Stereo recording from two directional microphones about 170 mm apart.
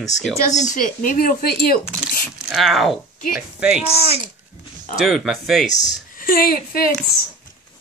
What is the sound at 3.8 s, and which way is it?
Speech, 35° left (ahead or behind).